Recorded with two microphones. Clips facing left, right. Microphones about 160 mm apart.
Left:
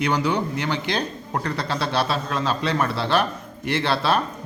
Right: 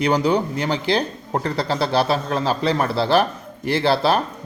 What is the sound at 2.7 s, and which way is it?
A man's voice, 40° right (ahead or behind).